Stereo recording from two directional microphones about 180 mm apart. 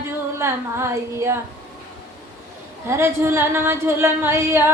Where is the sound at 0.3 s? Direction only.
15° right (ahead or behind).